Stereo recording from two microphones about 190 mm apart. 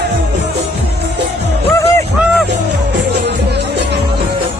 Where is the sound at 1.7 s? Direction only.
15° left (ahead or behind).